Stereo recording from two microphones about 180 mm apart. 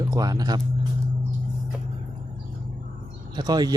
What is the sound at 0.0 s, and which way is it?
Speech, 20° right (ahead or behind).